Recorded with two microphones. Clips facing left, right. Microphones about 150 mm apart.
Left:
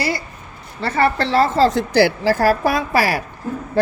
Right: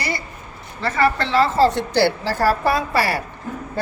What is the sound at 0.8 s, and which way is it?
Speech, 30° left (ahead or behind).